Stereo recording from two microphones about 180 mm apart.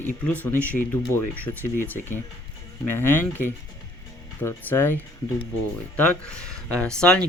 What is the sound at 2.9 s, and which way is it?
Speech, 10° left (ahead or behind).